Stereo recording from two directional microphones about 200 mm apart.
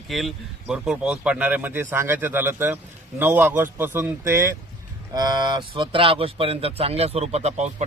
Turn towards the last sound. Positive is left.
turn(degrees=-35)  # may be behind; listen again after turning